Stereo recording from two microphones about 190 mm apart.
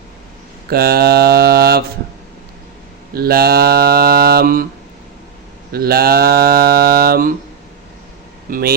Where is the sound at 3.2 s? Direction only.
55° right (ahead or behind).